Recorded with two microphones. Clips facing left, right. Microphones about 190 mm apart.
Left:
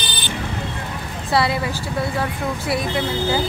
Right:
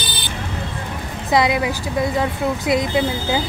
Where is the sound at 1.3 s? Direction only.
15° right (ahead or behind).